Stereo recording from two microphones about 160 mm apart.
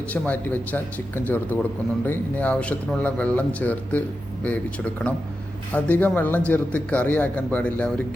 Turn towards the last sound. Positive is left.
turn(degrees=10)  # may be behind; listen again after turning